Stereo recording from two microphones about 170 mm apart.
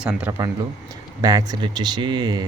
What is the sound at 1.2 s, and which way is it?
Speech, 25° right (ahead or behind).